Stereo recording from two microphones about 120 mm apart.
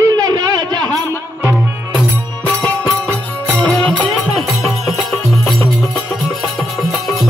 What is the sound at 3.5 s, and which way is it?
Music, 10° left (ahead or behind).